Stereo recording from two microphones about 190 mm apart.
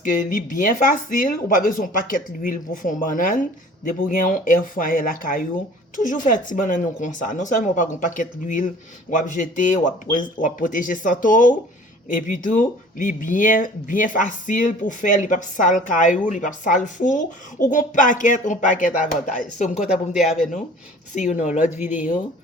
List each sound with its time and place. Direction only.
0.0 s speech: 45° left (ahead or behind)
19.8 s speech: 5° right (ahead or behind)
21.2 s speech: 40° left (ahead or behind)